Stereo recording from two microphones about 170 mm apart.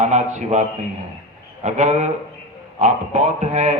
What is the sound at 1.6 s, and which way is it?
A man's voice, 45° right (ahead or behind).